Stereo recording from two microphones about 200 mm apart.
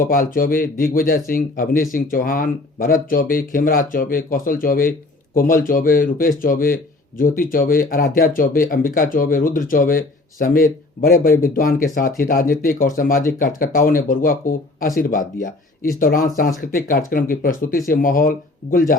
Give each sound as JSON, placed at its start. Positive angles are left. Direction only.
{"t": 0.0, "sound": "speech", "side_deg": 45}